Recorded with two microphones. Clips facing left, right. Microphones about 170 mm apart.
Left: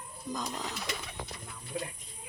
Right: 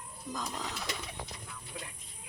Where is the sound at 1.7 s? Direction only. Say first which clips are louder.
Left 9 dB; 30° left (ahead or behind).